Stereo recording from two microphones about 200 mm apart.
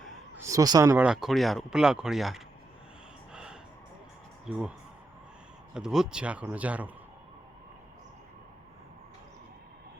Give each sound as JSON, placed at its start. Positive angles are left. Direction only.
{"t": 0.3, "sound": "speech", "side_deg": -15}
{"t": 1.0, "sound": "speech", "side_deg": 0}
{"t": 3.3, "sound": "music", "side_deg": -5}
{"t": 4.4, "sound": "speech", "side_deg": -5}
{"t": 5.7, "sound": "speech", "side_deg": -5}